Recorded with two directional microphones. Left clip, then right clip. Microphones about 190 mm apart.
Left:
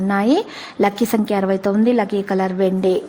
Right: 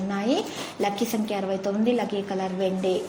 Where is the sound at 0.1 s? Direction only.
45° left (ahead or behind).